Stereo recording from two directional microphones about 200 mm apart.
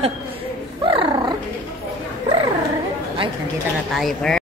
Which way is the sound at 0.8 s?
25° right (ahead or behind).